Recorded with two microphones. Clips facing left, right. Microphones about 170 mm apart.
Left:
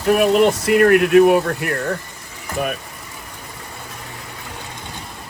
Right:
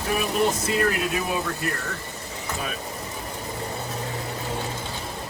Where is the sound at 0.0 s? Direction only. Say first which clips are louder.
Left 9 dB; 65° left (ahead or behind).